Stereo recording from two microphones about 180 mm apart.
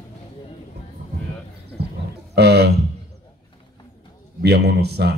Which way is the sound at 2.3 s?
65° right (ahead or behind).